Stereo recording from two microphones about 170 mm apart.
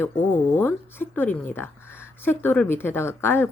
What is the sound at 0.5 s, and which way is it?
Speech, 10° left (ahead or behind).